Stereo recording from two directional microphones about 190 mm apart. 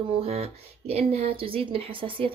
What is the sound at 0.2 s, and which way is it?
Speech, 30° right (ahead or behind).